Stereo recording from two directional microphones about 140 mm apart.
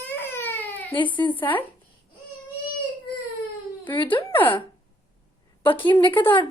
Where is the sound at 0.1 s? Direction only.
15° left (ahead or behind).